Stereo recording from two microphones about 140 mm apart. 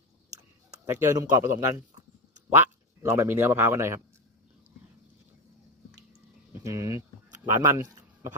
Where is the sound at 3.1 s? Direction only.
20° right (ahead or behind).